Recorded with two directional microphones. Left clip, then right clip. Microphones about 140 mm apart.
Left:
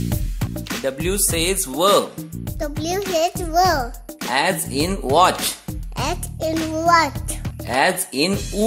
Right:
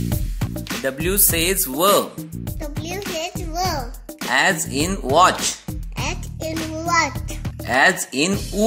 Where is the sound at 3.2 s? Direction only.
40° left (ahead or behind).